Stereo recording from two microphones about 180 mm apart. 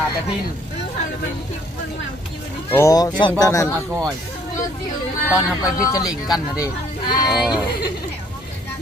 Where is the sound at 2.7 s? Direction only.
20° left (ahead or behind).